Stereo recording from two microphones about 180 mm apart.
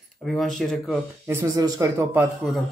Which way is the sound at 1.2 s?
15° right (ahead or behind).